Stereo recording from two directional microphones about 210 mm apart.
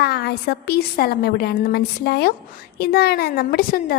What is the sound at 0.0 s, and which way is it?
A woman's voice, 50° left (ahead or behind).